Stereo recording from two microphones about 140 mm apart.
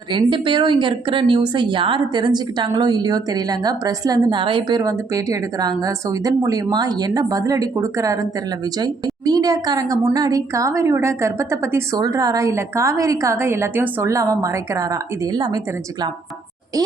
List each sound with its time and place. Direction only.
0.1 s a woman's voice: 35° right (ahead or behind)